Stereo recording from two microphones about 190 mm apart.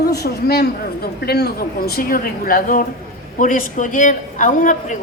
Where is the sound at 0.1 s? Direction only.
60° left (ahead or behind).